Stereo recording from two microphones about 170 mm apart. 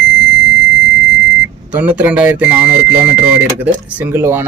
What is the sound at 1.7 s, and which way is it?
Speech, 10° right (ahead or behind).